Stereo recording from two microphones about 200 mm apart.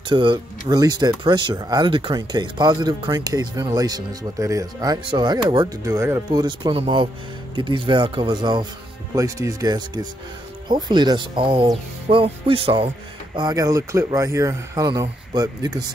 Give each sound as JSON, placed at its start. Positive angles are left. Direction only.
{"t": 0.1, "sound": "speech", "side_deg": -25}